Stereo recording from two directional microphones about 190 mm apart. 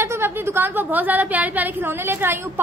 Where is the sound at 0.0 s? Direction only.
15° right (ahead or behind).